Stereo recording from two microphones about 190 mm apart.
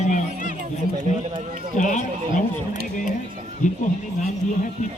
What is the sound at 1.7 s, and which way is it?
Speech, 40° left (ahead or behind).